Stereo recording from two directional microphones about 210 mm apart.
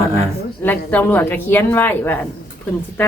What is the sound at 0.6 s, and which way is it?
Speech, 10° left (ahead or behind).